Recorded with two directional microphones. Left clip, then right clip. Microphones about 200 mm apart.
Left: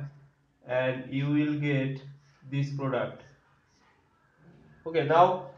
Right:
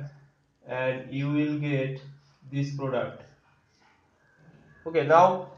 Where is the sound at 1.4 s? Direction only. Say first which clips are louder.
Right 2 dB; 5° left (ahead or behind).